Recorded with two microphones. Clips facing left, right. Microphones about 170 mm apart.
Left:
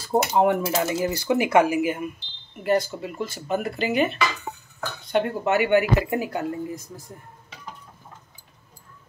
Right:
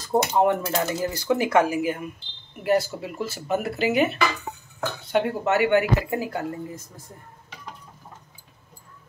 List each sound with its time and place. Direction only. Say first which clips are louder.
0.1 s speech: even; 5° left (ahead or behind)
2.5 s speech: even; 5° right (ahead or behind)
5.7 s speech: left 1 dB; 20° left (ahead or behind)